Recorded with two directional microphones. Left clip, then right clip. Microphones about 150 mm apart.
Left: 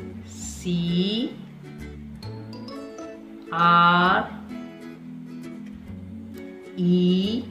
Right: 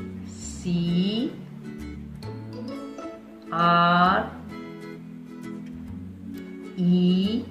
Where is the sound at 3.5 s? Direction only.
20° left (ahead or behind).